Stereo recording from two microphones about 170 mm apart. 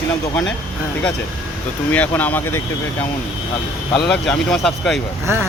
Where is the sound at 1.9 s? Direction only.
10° left (ahead or behind).